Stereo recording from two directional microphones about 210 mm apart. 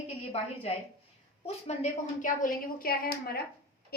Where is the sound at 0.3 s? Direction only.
30° left (ahead or behind).